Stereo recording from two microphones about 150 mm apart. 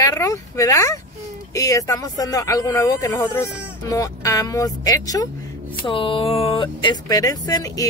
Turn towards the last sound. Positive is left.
turn(degrees=25)  # may be behind; listen again after turning